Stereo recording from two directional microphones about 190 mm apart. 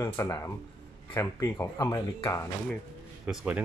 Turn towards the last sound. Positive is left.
turn(degrees=-5)  # may be behind; listen again after turning